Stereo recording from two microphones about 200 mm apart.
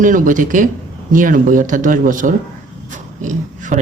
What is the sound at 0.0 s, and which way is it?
Speech, 40° right (ahead or behind).